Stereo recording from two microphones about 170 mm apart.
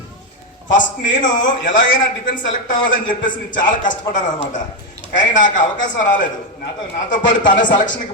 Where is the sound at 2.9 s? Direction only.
50° left (ahead or behind).